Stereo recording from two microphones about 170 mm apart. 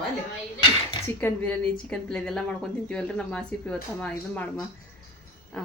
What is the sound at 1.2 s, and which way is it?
Speech, 10° left (ahead or behind).